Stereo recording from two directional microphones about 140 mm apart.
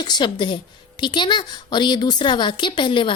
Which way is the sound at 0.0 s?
30° left (ahead or behind).